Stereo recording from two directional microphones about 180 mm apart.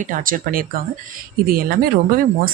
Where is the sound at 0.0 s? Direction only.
50° right (ahead or behind).